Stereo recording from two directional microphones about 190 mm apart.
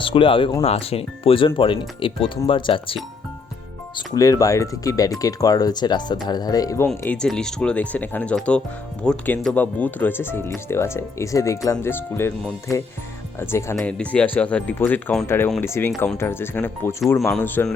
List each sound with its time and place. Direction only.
0.0 s speech: 30° left (ahead or behind); by 17.7 s 10° left (ahead or behind)